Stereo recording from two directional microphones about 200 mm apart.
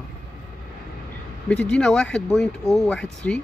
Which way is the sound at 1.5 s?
5° left (ahead or behind).